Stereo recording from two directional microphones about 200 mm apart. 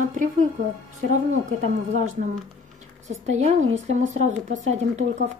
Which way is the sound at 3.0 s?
35° right (ahead or behind).